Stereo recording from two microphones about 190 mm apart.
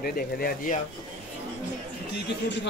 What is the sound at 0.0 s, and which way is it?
Speech, 50° left (ahead or behind).